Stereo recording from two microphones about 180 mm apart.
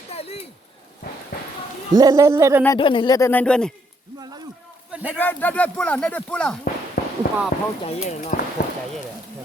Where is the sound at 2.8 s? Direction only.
25° left (ahead or behind); by 3.7 s 5° left (ahead or behind).